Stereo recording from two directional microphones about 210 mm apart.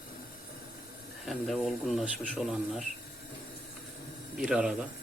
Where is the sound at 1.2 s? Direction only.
Centre (ahead or behind).